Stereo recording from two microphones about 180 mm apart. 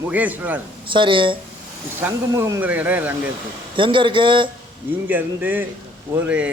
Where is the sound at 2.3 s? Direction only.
15° right (ahead or behind).